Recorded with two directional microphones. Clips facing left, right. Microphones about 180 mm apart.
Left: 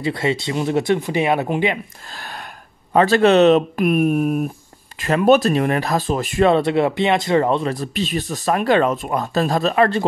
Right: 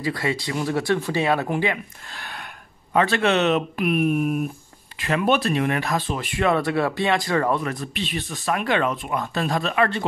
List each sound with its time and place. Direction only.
0.0 s speech: 25° left (ahead or behind)
2.9 s speech: 35° left (ahead or behind)
6.5 s speech: 25° left (ahead or behind)